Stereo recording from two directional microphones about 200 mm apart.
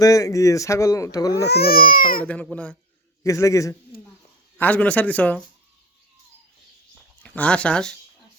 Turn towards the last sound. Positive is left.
turn(degrees=5)  # may be behind; listen again after turning